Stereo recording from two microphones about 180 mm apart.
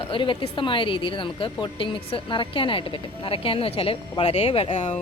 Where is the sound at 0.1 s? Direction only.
30° left (ahead or behind).